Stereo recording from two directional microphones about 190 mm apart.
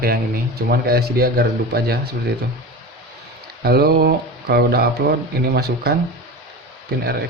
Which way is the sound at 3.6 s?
55° right (ahead or behind).